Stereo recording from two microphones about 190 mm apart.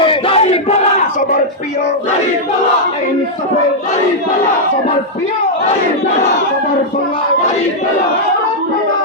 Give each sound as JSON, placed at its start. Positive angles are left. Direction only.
{"t": 0.0, "sound": "crowd", "side_deg": 30}